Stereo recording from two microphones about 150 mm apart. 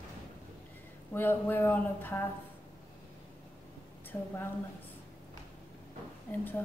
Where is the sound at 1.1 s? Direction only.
15° left (ahead or behind).